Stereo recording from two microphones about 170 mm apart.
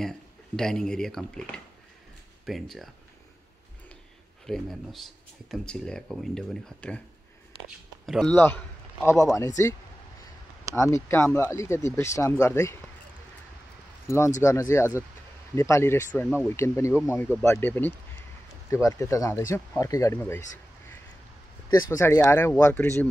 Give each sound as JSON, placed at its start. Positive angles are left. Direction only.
{"t": 0.6, "sound": "speech", "side_deg": 5}
{"t": 4.5, "sound": "speech", "side_deg": 0}
{"t": 8.4, "sound": "speech", "side_deg": 10}
{"t": 10.8, "sound": "speech", "side_deg": 15}
{"t": 14.0, "sound": "speech", "side_deg": 15}
{"t": 21.6, "sound": "speech", "side_deg": 15}